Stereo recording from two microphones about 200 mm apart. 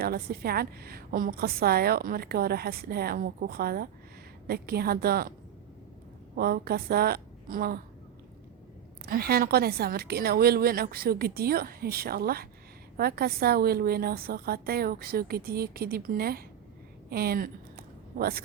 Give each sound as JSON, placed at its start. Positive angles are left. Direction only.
{"t": 0.0, "sound": "a woman's voice", "side_deg": -50}
{"t": 6.3, "sound": "a woman's voice", "side_deg": -50}
{"t": 9.0, "sound": "a woman's voice", "side_deg": -50}
{"t": 17.1, "sound": "a sound", "side_deg": -50}